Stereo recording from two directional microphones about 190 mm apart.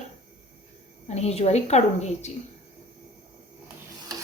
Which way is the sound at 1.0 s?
35° left (ahead or behind).